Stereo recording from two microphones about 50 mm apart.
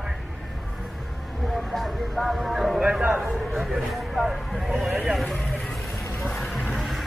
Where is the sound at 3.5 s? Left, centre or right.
Centre.